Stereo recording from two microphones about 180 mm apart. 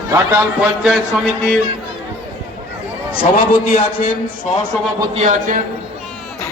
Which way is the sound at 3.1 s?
30° left (ahead or behind).